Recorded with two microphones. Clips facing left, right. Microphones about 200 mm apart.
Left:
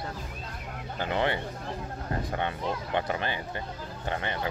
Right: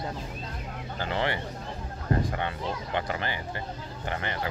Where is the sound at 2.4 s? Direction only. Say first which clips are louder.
Left 1 dB; 20° left (ahead or behind).